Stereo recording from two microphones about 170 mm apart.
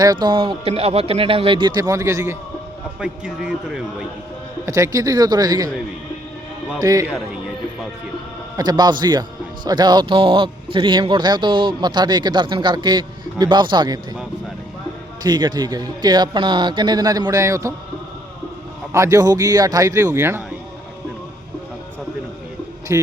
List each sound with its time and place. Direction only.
0.0 s a man's voice: 25° right (ahead or behind)
3.0 s a man's voice: 5° right (ahead or behind)
4.6 s a man's voice: 20° right (ahead or behind)
6.7 s a man's voice: 20° right (ahead or behind)
8.5 s a man's voice: 25° right (ahead or behind)
15.2 s a man's voice: 25° right (ahead or behind)
18.9 s a man's voice: 20° right (ahead or behind)
22.9 s a man's voice: 15° right (ahead or behind)